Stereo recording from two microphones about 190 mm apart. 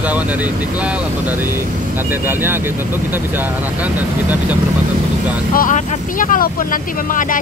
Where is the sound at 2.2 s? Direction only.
10° right (ahead or behind).